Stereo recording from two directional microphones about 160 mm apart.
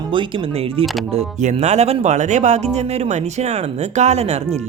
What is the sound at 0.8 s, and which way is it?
Speech, 45° right (ahead or behind).